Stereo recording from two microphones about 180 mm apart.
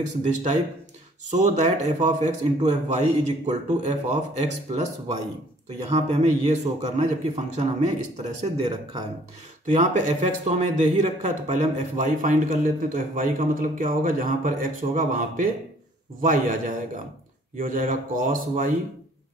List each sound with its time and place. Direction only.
0.0 s a man's voice: 40° right (ahead or behind)
5.9 s a man's voice: 40° right (ahead or behind)
9.7 s speech: 45° right (ahead or behind)